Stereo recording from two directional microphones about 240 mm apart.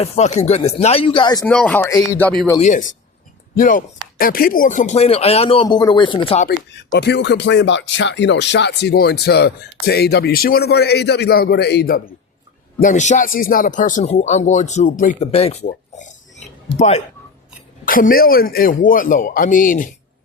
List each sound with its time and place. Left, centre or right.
0.0 s speech: left
1.5 s speech: centre
2.6 s speech: left
6.7 s speech: left